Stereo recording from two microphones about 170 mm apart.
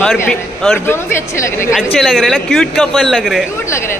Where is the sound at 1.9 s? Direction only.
Centre (ahead or behind).